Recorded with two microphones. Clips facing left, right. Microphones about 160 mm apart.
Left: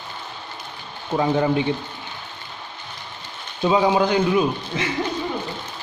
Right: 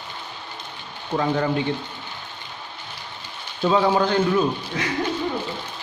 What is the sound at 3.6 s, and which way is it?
Speech, 15° left (ahead or behind).